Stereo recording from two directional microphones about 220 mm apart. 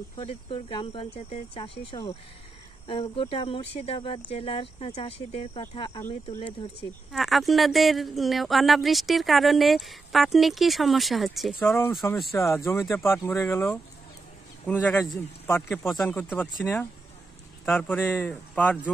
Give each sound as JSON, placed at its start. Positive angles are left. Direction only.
{"t": 0.2, "sound": "speech", "side_deg": 25}
{"t": 7.1, "sound": "speech", "side_deg": 0}
{"t": 11.6, "sound": "speech", "side_deg": 10}
{"t": 17.6, "sound": "speech", "side_deg": 10}